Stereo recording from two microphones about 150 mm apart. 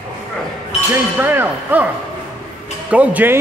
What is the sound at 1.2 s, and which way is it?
Speech, 15° right (ahead or behind).